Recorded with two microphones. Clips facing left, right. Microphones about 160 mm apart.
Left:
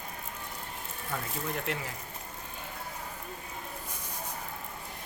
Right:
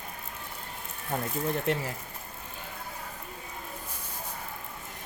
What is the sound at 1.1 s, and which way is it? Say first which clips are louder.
Speech: right 5 dB; 40° right (ahead or behind).